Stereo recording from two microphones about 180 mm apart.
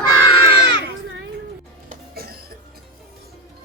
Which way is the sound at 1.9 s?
60° right (ahead or behind).